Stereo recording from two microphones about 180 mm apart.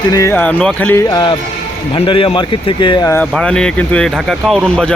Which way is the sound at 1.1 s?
25° left (ahead or behind).